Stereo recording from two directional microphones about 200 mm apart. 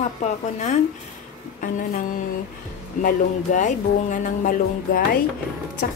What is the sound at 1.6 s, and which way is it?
Speech, 40° left (ahead or behind).